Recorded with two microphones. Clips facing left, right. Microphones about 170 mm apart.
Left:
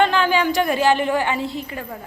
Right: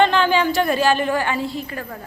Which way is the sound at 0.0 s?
10° left (ahead or behind).